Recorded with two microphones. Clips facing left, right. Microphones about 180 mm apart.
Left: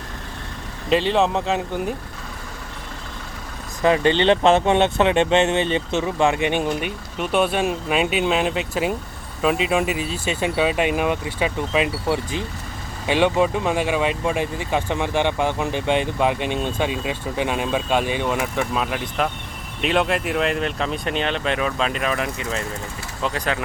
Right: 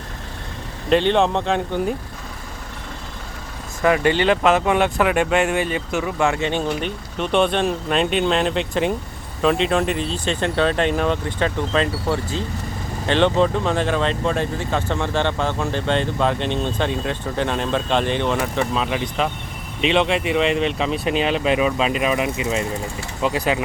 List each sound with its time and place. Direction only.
0.9 s speech: centre (ahead or behind)
3.8 s speech: 25° left (ahead or behind); by 23.6 s 10° right (ahead or behind)